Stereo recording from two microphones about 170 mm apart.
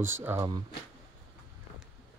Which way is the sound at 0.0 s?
15° right (ahead or behind).